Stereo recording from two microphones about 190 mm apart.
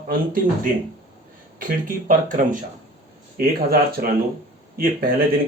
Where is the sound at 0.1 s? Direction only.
45° right (ahead or behind).